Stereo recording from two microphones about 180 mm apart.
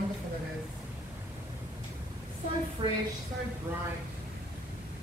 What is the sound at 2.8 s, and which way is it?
Speech, 30° right (ahead or behind).